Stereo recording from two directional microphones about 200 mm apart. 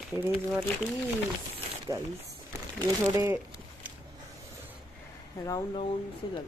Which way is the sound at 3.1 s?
10° right (ahead or behind).